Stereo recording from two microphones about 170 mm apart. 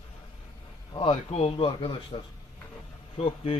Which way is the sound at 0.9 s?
30° left (ahead or behind).